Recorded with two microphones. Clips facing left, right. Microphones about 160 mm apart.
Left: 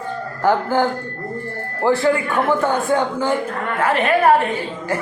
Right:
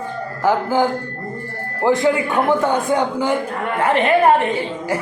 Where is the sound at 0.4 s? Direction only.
10° right (ahead or behind).